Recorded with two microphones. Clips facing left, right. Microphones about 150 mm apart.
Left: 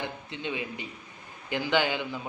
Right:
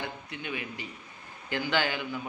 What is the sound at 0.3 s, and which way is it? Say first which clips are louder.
A man's voice: left 3 dB; 20° left (ahead or behind).